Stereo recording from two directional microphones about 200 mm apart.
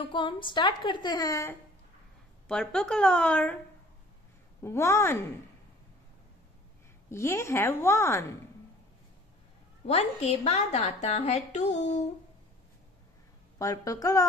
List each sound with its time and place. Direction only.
0.1 s a woman's voice: 25° left (ahead or behind)
2.4 s a woman's voice: 5° left (ahead or behind)
4.6 s a woman's voice: 15° left (ahead or behind)
7.1 s a woman's voice: 15° left (ahead or behind)
9.8 s a woman's voice: 30° left (ahead or behind)
13.6 s a woman's voice: 15° left (ahead or behind)